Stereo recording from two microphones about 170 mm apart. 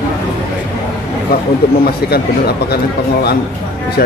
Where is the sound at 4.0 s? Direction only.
60° left (ahead or behind).